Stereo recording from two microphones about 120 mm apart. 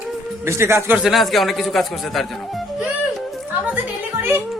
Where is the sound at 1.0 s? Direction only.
Centre (ahead or behind).